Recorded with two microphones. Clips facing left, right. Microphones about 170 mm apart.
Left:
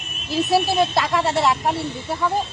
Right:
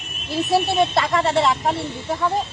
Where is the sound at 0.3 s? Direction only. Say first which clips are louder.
Left 1 dB; centre (ahead or behind).